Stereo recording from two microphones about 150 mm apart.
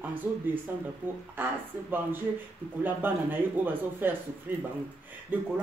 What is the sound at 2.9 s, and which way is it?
Speech, 10° right (ahead or behind).